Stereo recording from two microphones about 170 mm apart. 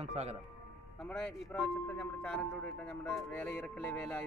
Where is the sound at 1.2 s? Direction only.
5° left (ahead or behind).